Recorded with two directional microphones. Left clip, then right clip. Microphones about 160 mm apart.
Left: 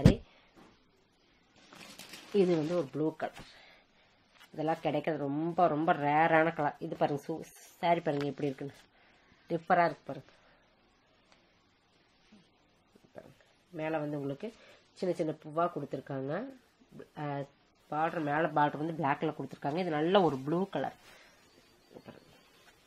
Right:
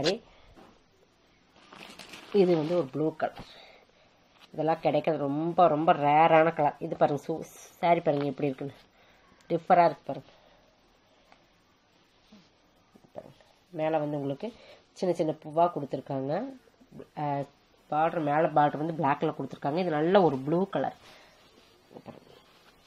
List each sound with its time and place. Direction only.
1.7 s a sound: 75° left (ahead or behind)
2.3 s speech: 5° left (ahead or behind)
4.6 s speech: centre (ahead or behind)
13.7 s a woman's voice: 10° right (ahead or behind)